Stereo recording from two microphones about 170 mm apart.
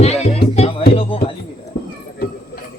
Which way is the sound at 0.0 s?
40° left (ahead or behind).